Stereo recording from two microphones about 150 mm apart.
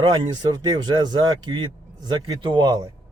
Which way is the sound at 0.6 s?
30° right (ahead or behind).